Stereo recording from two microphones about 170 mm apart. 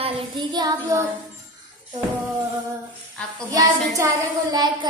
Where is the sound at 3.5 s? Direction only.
20° right (ahead or behind).